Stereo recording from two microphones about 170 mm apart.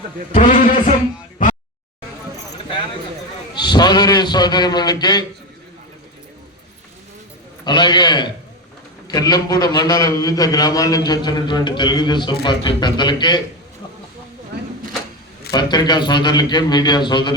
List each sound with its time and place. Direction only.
0.3 s a man's voice: 50° left (ahead or behind)
3.5 s a man's voice: 25° left (ahead or behind)
7.6 s a man's voice: 25° left (ahead or behind)
15.5 s a man's voice: 25° left (ahead or behind)